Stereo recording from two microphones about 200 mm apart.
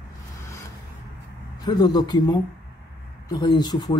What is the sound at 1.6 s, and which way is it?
Speech, 20° left (ahead or behind).